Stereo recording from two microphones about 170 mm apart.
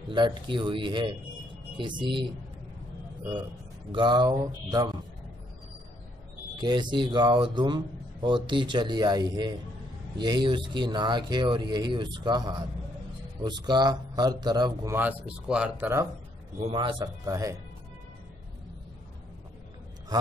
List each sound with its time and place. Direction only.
0.1 s speech: 25° right (ahead or behind)
3.9 s speech: 25° right (ahead or behind)
6.6 s speech: 25° right (ahead or behind)
15.0 s speech: 10° right (ahead or behind)
16.5 s speech: 35° right (ahead or behind)